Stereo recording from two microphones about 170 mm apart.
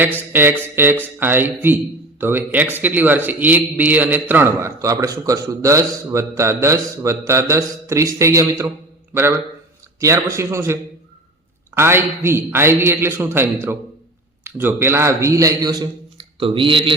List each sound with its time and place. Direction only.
0.3 s a man's voice: 10° right (ahead or behind)
10.0 s a man's voice: 20° right (ahead or behind)